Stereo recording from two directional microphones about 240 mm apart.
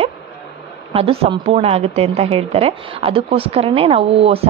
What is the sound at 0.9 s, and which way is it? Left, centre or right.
A woman's voice, right.